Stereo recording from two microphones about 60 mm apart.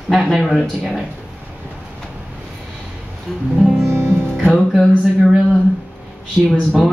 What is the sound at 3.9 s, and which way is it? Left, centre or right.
Music, right.